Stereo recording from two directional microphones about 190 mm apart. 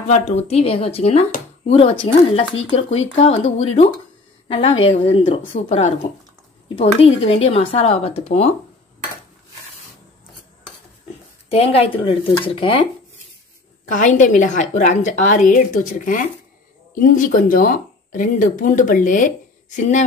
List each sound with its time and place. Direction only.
0.1 s a woman's voice: 35° left (ahead or behind)
11.4 s speech: 30° left (ahead or behind)
13.9 s speech: 40° left (ahead or behind)
17.0 s speech: 45° left (ahead or behind)